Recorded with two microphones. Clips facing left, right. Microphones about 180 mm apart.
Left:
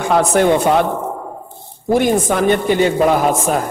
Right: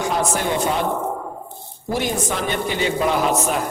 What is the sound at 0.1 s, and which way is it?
Speech, 60° left (ahead or behind).